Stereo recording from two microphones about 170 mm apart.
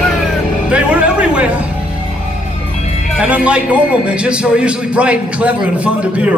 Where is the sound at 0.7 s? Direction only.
5° right (ahead or behind).